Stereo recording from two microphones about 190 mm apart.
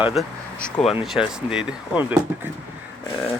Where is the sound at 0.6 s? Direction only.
5° left (ahead or behind).